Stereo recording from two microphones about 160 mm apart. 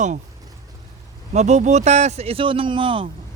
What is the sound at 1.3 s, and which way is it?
Speech, 45° right (ahead or behind).